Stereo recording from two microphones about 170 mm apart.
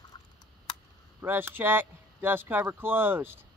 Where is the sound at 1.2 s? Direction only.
10° right (ahead or behind).